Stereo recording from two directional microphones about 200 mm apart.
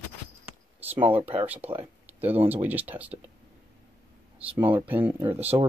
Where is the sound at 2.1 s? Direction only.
10° right (ahead or behind).